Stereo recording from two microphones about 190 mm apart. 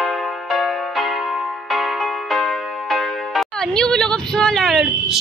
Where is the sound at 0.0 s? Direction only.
Centre (ahead or behind).